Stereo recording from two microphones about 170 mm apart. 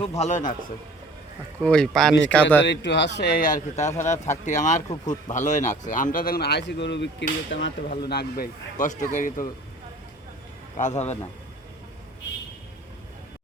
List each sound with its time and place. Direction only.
0.2 s speech: 45° left (ahead or behind)
1.6 s speech: 5° left (ahead or behind)
2.6 s a man's voice: 90° left; by 8.4 s 70° left (ahead or behind)
8.8 s speech: 45° left (ahead or behind)
10.8 s speech: 45° left (ahead or behind)